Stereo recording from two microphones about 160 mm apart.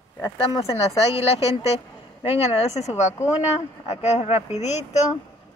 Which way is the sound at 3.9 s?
45° left (ahead or behind).